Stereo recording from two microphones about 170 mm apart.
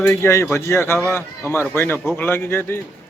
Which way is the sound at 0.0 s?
10° left (ahead or behind).